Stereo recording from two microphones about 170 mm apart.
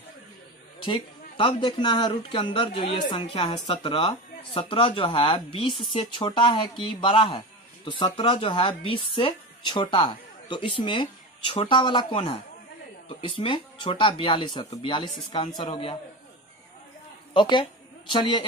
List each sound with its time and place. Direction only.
0.8 s a woman's voice: 30° left (ahead or behind)
17.3 s a woman's voice: 30° left (ahead or behind)